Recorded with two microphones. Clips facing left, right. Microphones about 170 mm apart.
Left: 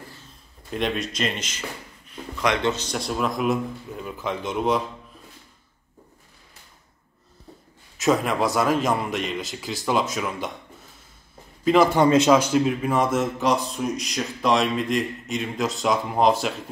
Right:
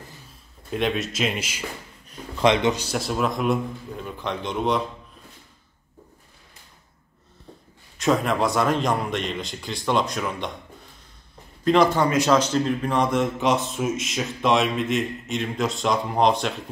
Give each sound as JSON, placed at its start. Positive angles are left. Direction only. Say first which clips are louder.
{"t": 0.7, "sound": "a man's voice", "louder": "right 1 dB", "side_deg": 0}
{"t": 2.4, "sound": "a man's voice", "louder": "right 4 dB", "side_deg": -20}
{"t": 8.0, "sound": "a man's voice", "louder": "even", "side_deg": 0}
{"t": 11.6, "sound": "a man's voice", "louder": "even", "side_deg": 5}
{"t": 12.0, "sound": "speech", "louder": "left 4 dB", "side_deg": 20}
{"t": 12.3, "sound": "a man's voice", "louder": "left 2 dB", "side_deg": 10}